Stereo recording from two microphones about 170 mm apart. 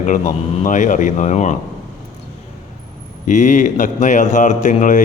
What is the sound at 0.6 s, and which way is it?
Speech, 50° left (ahead or behind).